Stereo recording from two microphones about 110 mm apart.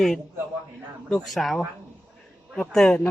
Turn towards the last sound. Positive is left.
turn(degrees=5)  # may be behind; listen again after turning